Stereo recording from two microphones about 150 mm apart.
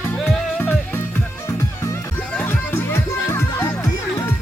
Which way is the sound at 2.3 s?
10° left (ahead or behind).